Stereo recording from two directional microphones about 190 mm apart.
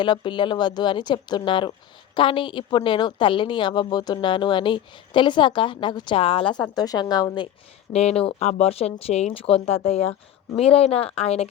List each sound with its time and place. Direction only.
0.0 s a woman's voice: 25° left (ahead or behind)
7.9 s speech: 35° left (ahead or behind)